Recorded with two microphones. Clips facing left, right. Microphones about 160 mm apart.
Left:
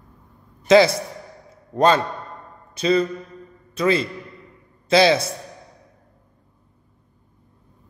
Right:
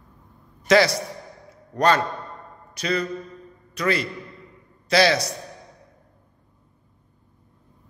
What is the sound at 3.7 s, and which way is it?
A man's voice, 25° left (ahead or behind).